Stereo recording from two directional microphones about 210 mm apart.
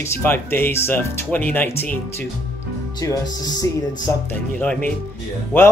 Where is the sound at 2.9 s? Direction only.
20° left (ahead or behind).